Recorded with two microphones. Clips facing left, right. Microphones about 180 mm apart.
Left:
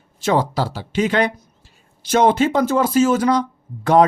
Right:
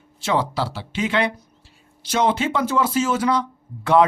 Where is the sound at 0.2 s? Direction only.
45° left (ahead or behind).